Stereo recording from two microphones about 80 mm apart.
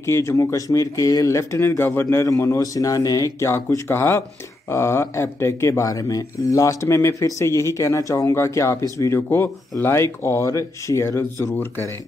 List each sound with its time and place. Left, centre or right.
0.0 s speech: left
9.3 s speech: left